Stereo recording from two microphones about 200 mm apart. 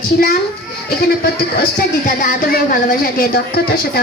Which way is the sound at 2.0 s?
40° left (ahead or behind).